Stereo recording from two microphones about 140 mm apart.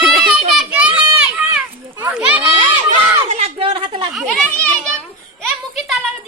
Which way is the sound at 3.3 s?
45° right (ahead or behind).